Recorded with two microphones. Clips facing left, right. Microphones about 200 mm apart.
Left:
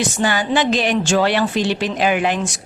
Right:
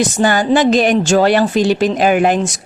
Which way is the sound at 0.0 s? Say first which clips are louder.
Right 5 dB; 45° right (ahead or behind).